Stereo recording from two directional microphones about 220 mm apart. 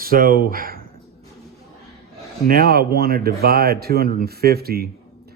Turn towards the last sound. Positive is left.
turn(degrees=-45)  # may be behind; listen again after turning